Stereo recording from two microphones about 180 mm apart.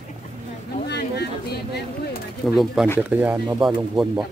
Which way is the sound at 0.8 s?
65° left (ahead or behind).